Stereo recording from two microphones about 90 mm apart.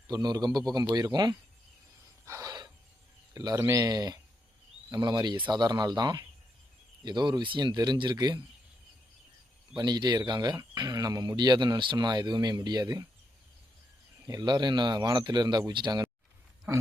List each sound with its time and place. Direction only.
0.1 s speech: 50° right (ahead or behind)
2.2 s a sound: 35° right (ahead or behind)
2.5 s a sound: 50° right (ahead or behind)
3.3 s speech: 45° right (ahead or behind)
9.7 s speech: 50° right (ahead or behind)
14.3 s speech: 50° right (ahead or behind)